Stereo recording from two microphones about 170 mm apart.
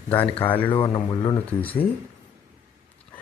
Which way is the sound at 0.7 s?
30° left (ahead or behind).